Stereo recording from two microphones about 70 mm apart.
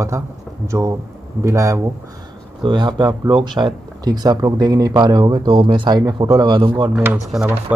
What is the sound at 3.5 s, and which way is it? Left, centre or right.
Speech, right.